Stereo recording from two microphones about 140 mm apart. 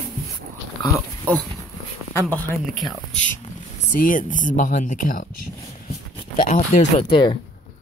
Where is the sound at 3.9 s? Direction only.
70° left (ahead or behind).